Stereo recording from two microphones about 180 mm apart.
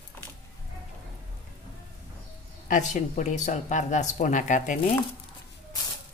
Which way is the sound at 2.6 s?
45° left (ahead or behind).